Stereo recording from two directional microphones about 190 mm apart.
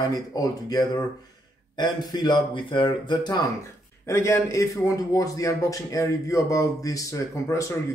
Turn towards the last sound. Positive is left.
turn(degrees=15)  # may be behind; listen again after turning